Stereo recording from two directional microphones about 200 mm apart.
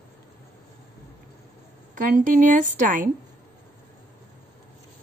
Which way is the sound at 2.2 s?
40° right (ahead or behind).